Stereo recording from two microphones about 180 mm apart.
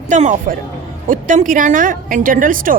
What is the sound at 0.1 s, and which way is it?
A woman's voice, 45° right (ahead or behind).